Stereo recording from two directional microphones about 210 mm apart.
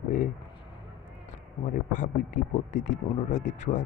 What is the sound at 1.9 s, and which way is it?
Speech, 35° left (ahead or behind).